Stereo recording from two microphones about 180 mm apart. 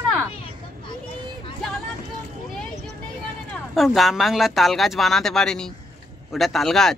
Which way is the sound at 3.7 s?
Centre (ahead or behind).